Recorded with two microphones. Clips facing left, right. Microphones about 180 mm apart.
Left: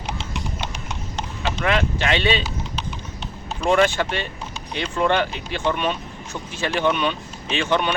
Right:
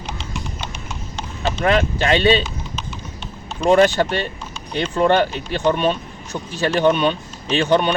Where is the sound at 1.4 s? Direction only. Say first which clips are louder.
Right 4 dB; 40° right (ahead or behind).